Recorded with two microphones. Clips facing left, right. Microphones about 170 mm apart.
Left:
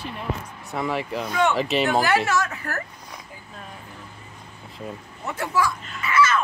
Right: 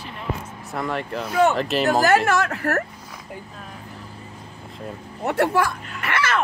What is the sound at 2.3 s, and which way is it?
Speech, 60° right (ahead or behind).